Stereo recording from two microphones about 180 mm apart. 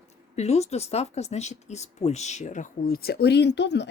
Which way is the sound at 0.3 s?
35° left (ahead or behind).